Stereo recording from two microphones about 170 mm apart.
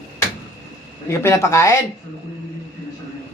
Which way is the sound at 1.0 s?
15° left (ahead or behind).